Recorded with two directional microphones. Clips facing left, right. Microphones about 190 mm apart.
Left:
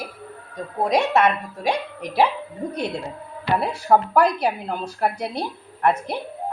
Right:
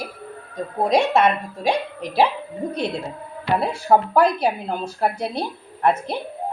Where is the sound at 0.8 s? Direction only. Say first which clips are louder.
Right 1 dB; 30° right (ahead or behind).